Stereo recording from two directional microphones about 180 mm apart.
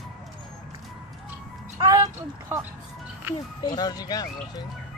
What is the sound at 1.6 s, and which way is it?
Music, 15° right (ahead or behind).